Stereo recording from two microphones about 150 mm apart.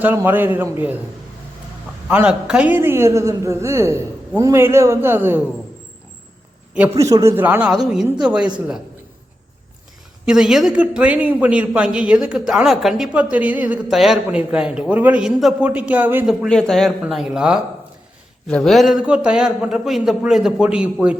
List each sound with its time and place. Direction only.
0.0 s a man's voice: 10° right (ahead or behind)
2.0 s a man's voice: 5° right (ahead or behind)
6.7 s a man's voice: 10° right (ahead or behind)
7.0 s a man's voice: 20° right (ahead or behind)
10.2 s a man's voice: 5° right (ahead or behind)
16.5 s a man's voice: 5° left (ahead or behind)